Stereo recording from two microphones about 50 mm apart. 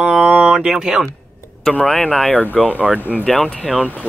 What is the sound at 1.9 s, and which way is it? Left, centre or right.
Speech, centre.